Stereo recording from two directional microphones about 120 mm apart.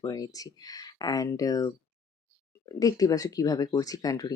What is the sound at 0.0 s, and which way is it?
Speech, 30° left (ahead or behind).